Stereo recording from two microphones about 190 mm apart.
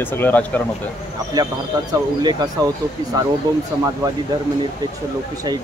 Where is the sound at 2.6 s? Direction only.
20° right (ahead or behind).